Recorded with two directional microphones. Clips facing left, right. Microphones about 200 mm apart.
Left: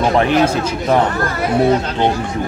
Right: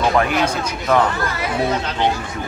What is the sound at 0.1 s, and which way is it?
Speech, 25° left (ahead or behind).